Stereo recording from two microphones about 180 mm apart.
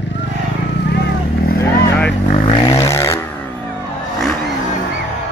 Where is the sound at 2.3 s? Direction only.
30° left (ahead or behind).